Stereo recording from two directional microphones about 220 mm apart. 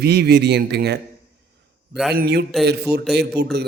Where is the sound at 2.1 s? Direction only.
45° right (ahead or behind).